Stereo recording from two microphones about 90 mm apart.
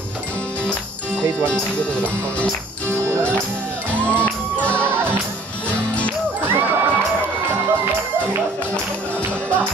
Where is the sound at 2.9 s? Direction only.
25° right (ahead or behind).